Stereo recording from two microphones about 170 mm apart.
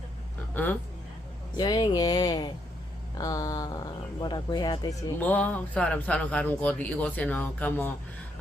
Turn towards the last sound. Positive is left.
turn(degrees=10)  # may be behind; listen again after turning